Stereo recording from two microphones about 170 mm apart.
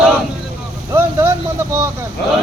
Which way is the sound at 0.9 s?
15° right (ahead or behind).